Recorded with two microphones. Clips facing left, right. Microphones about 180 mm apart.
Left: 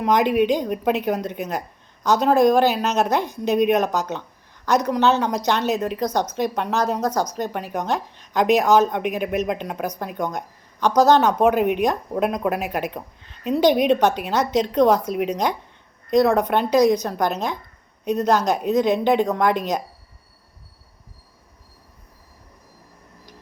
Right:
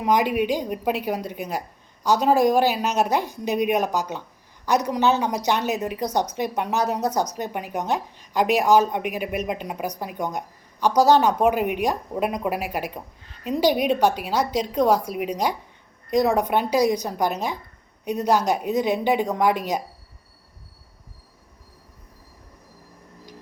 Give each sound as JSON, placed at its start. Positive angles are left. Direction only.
{"t": 0.0, "sound": "a woman's voice", "side_deg": -10}